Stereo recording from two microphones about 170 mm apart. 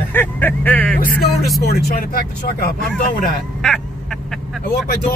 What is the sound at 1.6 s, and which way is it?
Speech, 60° left (ahead or behind).